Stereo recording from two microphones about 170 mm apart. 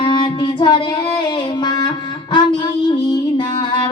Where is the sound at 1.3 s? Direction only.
25° left (ahead or behind).